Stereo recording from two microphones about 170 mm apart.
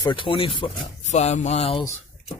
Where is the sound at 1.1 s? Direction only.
45° left (ahead or behind).